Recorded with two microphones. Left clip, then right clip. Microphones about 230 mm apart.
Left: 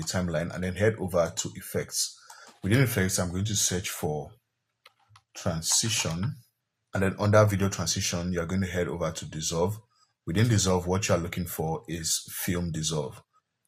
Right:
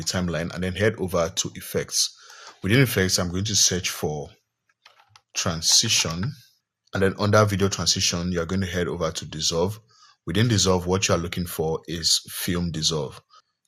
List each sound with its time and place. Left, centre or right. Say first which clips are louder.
0.1 s speech: right 3 dB; right
5.3 s speech: right 8 dB; right